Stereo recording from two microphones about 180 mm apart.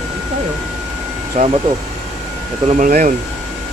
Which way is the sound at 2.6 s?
45° right (ahead or behind).